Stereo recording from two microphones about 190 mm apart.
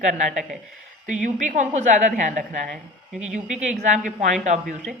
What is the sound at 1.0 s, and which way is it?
A woman's voice, 40° right (ahead or behind).